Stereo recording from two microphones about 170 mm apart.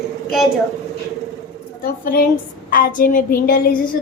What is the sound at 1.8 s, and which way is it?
A woman's voice, 55° left (ahead or behind).